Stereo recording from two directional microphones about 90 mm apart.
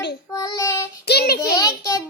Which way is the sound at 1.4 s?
45° left (ahead or behind).